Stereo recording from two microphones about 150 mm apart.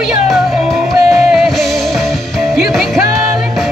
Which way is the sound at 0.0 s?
Centre (ahead or behind).